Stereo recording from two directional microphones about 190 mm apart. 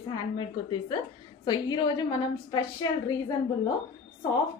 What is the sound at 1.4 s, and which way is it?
A woman's voice, 25° left (ahead or behind).